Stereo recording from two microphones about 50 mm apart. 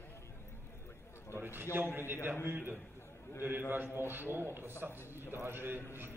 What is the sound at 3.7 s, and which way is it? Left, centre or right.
A man's voice, right.